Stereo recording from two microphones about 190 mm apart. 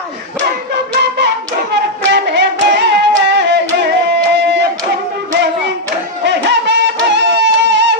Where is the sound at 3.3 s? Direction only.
65° right (ahead or behind).